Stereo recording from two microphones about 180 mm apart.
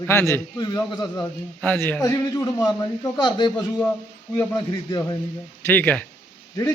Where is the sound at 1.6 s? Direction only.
10° left (ahead or behind).